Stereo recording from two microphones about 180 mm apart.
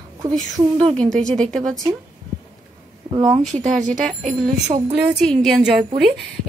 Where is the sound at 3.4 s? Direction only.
45° right (ahead or behind).